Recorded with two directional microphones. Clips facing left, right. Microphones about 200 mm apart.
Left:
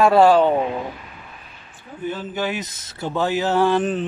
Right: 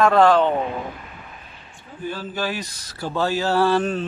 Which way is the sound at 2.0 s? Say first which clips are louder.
Left 2 dB; 20° left (ahead or behind).